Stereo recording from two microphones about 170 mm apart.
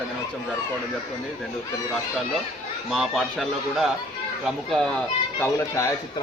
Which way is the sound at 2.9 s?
Centre (ahead or behind).